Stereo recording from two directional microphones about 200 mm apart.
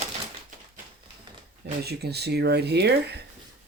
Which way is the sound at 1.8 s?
55° right (ahead or behind).